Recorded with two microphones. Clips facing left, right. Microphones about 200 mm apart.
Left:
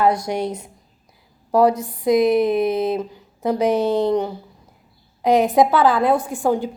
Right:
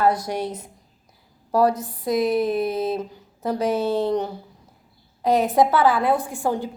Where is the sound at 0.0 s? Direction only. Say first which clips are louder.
Left 2 dB; 15° left (ahead or behind).